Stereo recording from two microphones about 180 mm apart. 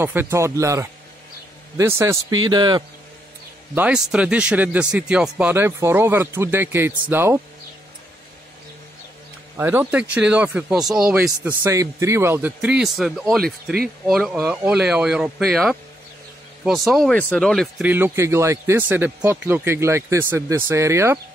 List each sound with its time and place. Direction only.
0.0 s a man's voice: 10° right (ahead or behind)
3.7 s speech: 5° right (ahead or behind)
9.6 s speech: 10° right (ahead or behind)
17.8 s speech: 10° right (ahead or behind)